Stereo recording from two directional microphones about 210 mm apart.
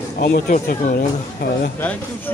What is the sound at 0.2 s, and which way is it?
Speech, 45° left (ahead or behind).